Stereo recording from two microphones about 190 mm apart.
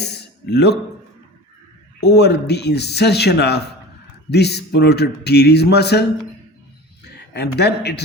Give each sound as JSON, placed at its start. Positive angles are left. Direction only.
{"t": 0.0, "sound": "speech", "side_deg": 60}
{"t": 2.0, "sound": "a man's voice", "side_deg": 60}
{"t": 7.3, "sound": "a man's voice", "side_deg": 60}